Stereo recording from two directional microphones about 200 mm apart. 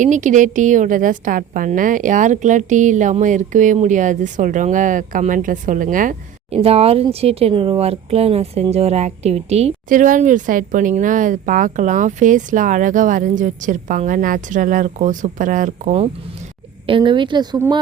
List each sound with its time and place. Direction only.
0.0 s a woman's voice: 40° right (ahead or behind)
6.6 s a woman's voice: 30° right (ahead or behind)
16.8 s speech: 25° right (ahead or behind)